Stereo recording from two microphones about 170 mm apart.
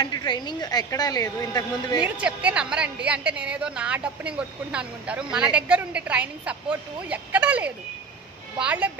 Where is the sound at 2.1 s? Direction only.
5° right (ahead or behind).